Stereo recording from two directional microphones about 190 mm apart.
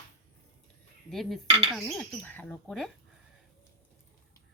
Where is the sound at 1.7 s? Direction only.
5° left (ahead or behind).